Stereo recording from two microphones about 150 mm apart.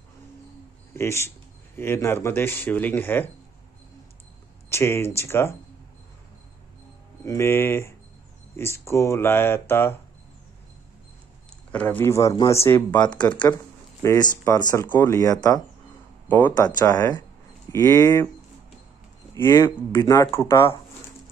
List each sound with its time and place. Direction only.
0.9 s speech: 15° left (ahead or behind)
4.6 s speech: 15° left (ahead or behind)
7.2 s speech: 15° left (ahead or behind)
11.7 s speech: 10° left (ahead or behind)
16.3 s speech: 10° left (ahead or behind)
16.5 s speech: 25° left (ahead or behind)
19.3 s speech: 20° left (ahead or behind)